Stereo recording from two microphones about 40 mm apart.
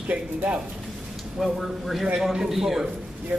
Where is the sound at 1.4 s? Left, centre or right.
Centre.